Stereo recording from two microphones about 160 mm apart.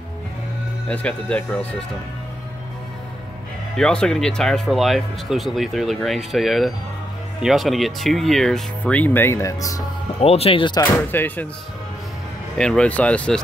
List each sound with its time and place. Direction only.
0.8 s speech: 5° left (ahead or behind)
3.7 s speech: 5° left (ahead or behind); by 9.8 s 20° left (ahead or behind)
10.2 s speech: 40° left (ahead or behind)
11.0 s speech: 15° left (ahead or behind)
12.5 s speech: 5° left (ahead or behind)